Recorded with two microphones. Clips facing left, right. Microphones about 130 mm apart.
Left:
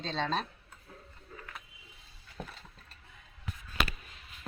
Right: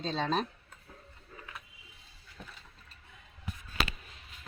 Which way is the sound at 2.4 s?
50° left (ahead or behind).